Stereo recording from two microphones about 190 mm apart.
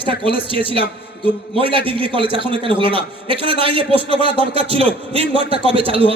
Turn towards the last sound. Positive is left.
turn(degrees=-30)  # may be behind; listen again after turning